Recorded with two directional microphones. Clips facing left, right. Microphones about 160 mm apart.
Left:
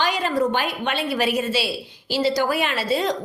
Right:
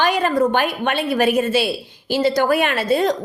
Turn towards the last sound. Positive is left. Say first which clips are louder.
# right 5 dB
turn(degrees=-50)  # may be behind; listen again after turning